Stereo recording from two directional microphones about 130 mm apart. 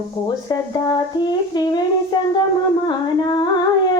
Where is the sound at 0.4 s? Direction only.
30° left (ahead or behind).